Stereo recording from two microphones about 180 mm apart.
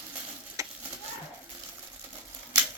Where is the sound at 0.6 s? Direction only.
15° right (ahead or behind).